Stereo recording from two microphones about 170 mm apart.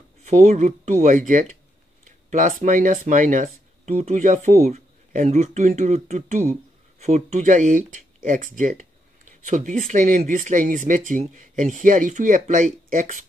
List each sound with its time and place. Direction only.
0.4 s speech: 45° right (ahead or behind)